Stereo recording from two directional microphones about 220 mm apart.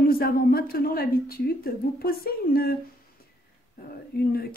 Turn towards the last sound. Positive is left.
turn(degrees=45)  # may be behind; listen again after turning